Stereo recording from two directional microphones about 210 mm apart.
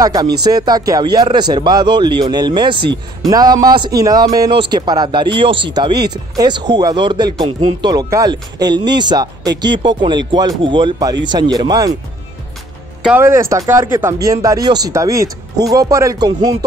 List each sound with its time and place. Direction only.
0.0 s speech: 15° right (ahead or behind)
13.0 s speech: 10° right (ahead or behind)